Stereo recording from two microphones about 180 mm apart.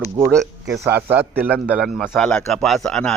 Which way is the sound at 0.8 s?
10° right (ahead or behind).